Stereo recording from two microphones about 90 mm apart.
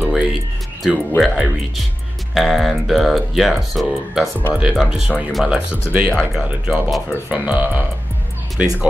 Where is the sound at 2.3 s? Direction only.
Centre (ahead or behind); by 7.8 s 15° right (ahead or behind).